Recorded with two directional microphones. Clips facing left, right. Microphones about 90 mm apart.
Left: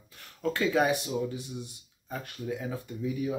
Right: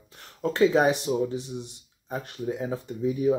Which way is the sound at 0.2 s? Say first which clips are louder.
Right 7 dB; 30° right (ahead or behind).